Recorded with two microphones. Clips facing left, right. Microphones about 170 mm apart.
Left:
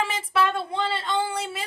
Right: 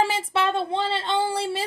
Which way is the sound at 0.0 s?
30° right (ahead or behind).